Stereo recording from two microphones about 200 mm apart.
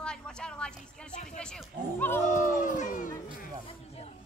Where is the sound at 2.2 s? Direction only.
40° left (ahead or behind).